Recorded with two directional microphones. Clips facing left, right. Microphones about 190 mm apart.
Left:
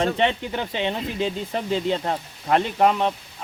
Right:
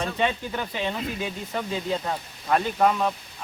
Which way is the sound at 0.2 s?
25° left (ahead or behind).